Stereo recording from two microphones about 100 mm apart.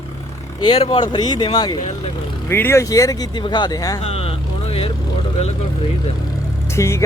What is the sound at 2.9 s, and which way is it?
Speech, 35° left (ahead or behind).